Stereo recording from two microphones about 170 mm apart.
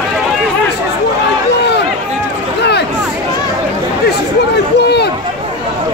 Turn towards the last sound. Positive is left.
turn(degrees=75)  # may be behind; listen again after turning